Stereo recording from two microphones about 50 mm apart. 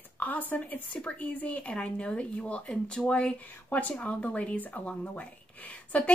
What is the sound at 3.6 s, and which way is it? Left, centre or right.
A woman's voice, left.